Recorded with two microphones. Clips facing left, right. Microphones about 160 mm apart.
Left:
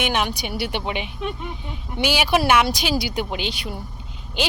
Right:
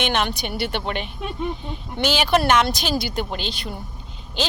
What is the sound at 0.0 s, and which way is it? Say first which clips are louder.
Speech: even; 5° left (ahead or behind).